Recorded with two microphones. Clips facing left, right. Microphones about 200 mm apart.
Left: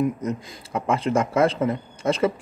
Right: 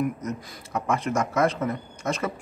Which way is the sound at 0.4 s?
25° left (ahead or behind).